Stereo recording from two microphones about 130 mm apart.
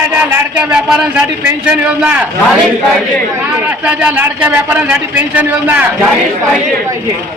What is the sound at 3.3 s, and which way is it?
A man's voice, 10° right (ahead or behind).